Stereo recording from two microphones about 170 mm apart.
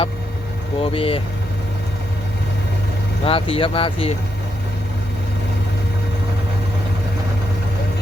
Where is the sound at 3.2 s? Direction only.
35° left (ahead or behind).